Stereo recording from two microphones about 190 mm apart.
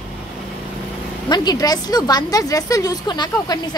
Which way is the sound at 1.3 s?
20° left (ahead or behind).